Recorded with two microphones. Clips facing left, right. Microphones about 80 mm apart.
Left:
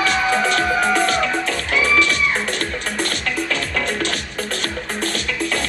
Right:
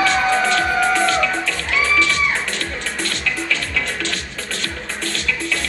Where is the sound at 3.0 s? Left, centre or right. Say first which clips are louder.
Left 1 dB; left.